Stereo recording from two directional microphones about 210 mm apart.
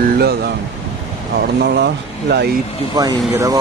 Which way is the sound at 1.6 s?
50° right (ahead or behind).